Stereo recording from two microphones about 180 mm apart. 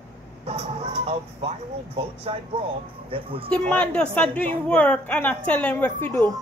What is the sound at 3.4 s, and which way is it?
A woman's voice, 5° left (ahead or behind).